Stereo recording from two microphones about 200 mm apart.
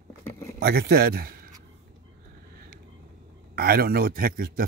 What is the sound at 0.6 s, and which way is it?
Speech, 50° right (ahead or behind).